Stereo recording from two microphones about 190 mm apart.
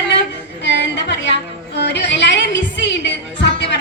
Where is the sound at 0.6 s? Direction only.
65° left (ahead or behind).